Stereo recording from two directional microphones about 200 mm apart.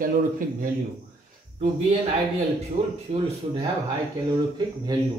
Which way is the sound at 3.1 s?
35° right (ahead or behind).